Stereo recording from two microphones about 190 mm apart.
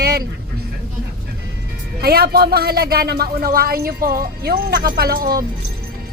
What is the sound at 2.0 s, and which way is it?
Speech, 55° right (ahead or behind).